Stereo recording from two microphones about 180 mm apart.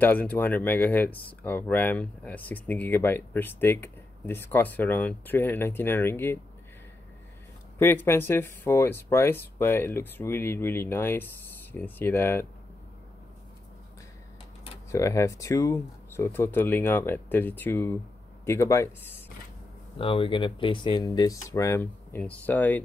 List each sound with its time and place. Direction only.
0.0 s speech: 10° left (ahead or behind)
7.8 s speech: 10° left (ahead or behind)
14.9 s speech: 15° left (ahead or behind)
20.0 s speech: 30° left (ahead or behind); by 22.8 s 10° left (ahead or behind)